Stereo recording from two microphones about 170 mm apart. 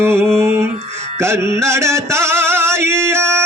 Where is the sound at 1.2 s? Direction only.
15° right (ahead or behind).